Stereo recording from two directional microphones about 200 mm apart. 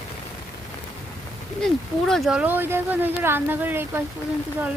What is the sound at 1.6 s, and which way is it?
Speech, centre (ahead or behind).